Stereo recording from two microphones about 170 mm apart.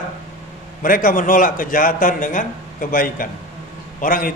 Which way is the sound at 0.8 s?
55° left (ahead or behind).